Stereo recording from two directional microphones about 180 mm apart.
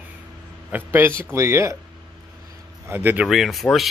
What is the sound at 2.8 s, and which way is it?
Speech, 10° right (ahead or behind).